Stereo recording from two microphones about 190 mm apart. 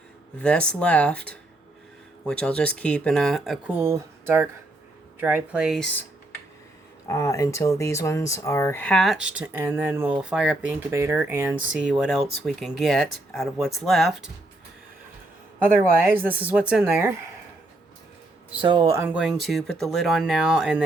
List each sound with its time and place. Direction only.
0.3 s speech: 5° left (ahead or behind)
3.7 s a woman's voice: 15° right (ahead or behind)
7.1 s speech: 15° left (ahead or behind); by 14.3 s centre (ahead or behind)
16.0 s a woman's voice: 10° right (ahead or behind)
18.6 s speech: 25° right (ahead or behind)
18.9 s speech: 10° right (ahead or behind)